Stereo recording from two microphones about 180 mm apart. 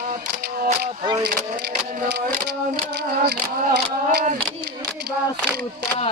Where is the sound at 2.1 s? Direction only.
65° right (ahead or behind).